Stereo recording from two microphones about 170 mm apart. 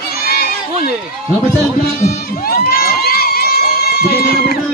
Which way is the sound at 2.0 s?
60° left (ahead or behind).